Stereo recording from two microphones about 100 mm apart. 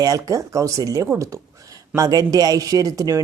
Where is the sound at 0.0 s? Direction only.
35° right (ahead or behind).